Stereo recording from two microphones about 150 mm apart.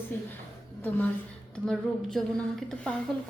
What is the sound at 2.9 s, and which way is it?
Speech, 5° left (ahead or behind).